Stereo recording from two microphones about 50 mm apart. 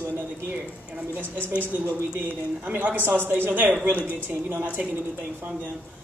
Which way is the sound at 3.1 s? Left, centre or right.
Right.